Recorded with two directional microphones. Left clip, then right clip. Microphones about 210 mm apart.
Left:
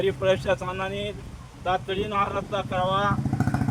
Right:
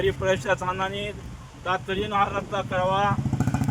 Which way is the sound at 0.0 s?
10° right (ahead or behind).